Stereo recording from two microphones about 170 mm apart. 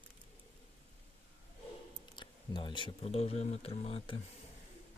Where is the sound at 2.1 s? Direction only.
25° left (ahead or behind).